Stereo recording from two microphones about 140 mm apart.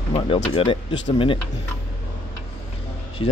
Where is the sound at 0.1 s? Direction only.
40° left (ahead or behind).